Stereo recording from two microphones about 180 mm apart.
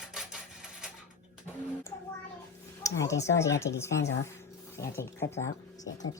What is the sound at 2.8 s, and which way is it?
Speech, 15° left (ahead or behind).